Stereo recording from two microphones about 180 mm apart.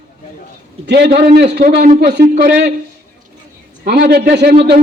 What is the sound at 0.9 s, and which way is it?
A man's voice, 65° right (ahead or behind).